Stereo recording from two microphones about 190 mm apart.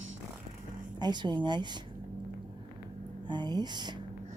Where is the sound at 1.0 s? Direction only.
25° right (ahead or behind).